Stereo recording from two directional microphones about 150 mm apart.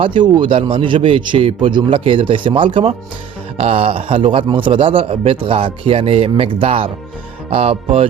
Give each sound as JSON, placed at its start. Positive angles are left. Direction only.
{"t": 0.3, "sound": "a man's voice", "side_deg": -30}
{"t": 7.5, "sound": "music", "side_deg": -45}